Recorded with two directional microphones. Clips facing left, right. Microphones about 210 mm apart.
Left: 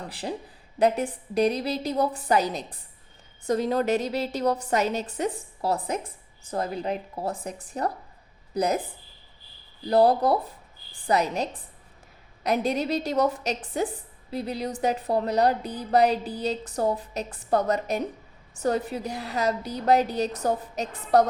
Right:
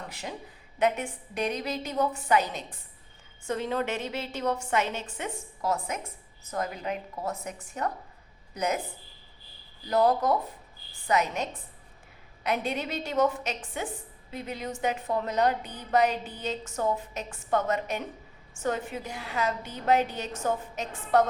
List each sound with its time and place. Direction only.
0.1 s a woman's voice: 35° left (ahead or behind)
9.8 s a woman's voice: 35° left (ahead or behind)